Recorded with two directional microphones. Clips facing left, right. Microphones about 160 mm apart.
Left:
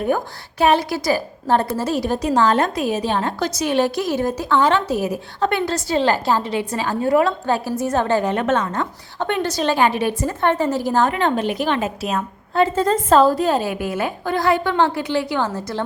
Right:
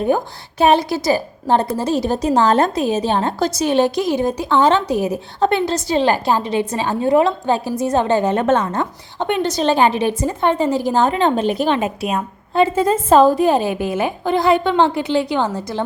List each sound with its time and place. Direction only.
0.6 s a woman's voice: 25° right (ahead or behind)
11.8 s a woman's voice: 15° right (ahead or behind)